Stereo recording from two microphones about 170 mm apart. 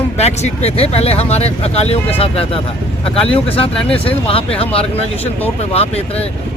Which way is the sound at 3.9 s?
35° left (ahead or behind).